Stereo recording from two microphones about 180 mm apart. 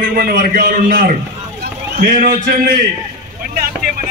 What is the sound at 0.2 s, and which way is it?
A man's voice, 55° right (ahead or behind).